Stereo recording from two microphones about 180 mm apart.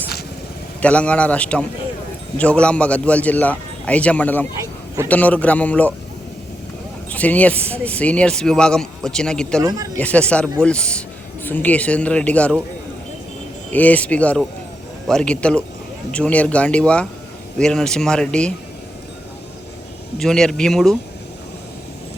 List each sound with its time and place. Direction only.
0.8 s a man's voice: 5° left (ahead or behind)
7.1 s speech: 10° left (ahead or behind)
9.6 s speech: 20° right (ahead or behind)
10.0 s a man's voice: 5° left (ahead or behind)
13.7 s a man's voice: 10° left (ahead or behind)
20.1 s speech: 5° left (ahead or behind)